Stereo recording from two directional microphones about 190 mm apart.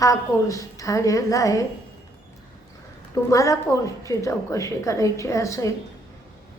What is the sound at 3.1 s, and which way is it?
A woman's voice, 15° left (ahead or behind).